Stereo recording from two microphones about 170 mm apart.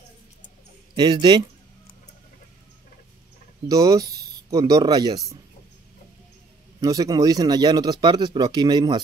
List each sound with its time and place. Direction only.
0.9 s speech: 25° right (ahead or behind)
3.6 s speech: 20° right (ahead or behind)
6.8 s speech: 20° right (ahead or behind)